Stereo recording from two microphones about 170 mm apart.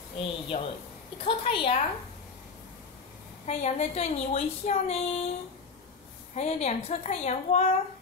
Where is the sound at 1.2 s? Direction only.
30° left (ahead or behind).